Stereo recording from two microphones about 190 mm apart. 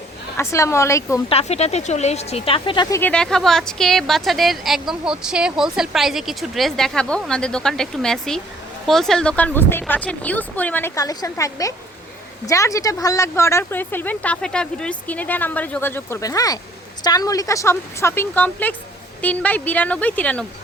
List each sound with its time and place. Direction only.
0.3 s speech: 15° left (ahead or behind)
1.3 s speech: 35° left (ahead or behind)
3.0 s speech: 5° left (ahead or behind)